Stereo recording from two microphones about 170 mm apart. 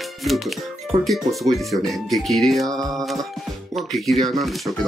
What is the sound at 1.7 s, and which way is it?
Speech, centre (ahead or behind).